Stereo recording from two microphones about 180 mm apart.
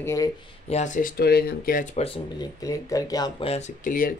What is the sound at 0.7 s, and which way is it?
Speech, 40° left (ahead or behind).